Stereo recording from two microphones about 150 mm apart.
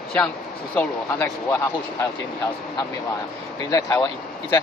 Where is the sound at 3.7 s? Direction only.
20° left (ahead or behind).